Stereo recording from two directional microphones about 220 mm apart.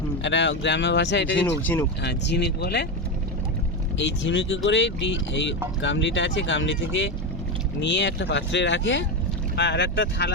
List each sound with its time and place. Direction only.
0.2 s speech: 55° left (ahead or behind)
1.6 s speech: 10° left (ahead or behind)
2.0 s speech: 50° left (ahead or behind)
3.9 s speech: 55° left (ahead or behind)